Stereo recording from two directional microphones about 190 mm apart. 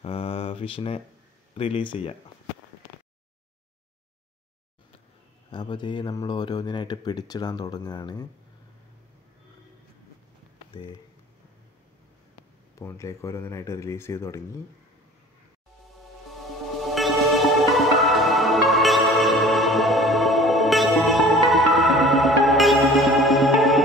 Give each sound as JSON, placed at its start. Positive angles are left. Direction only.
{"t": 0.0, "sound": "mantra", "side_deg": 30}
{"t": 1.5, "sound": "speech", "side_deg": 30}
{"t": 5.5, "sound": "speech", "side_deg": 25}
{"t": 12.7, "sound": "speech", "side_deg": 15}
{"t": 16.3, "sound": "music", "side_deg": 0}